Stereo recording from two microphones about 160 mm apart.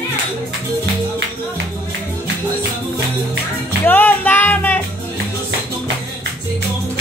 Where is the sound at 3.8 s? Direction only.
10° left (ahead or behind).